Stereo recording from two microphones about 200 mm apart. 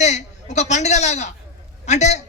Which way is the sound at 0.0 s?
35° left (ahead or behind).